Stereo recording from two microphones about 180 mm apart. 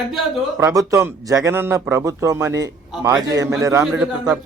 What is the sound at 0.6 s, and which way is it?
Speech, 20° right (ahead or behind).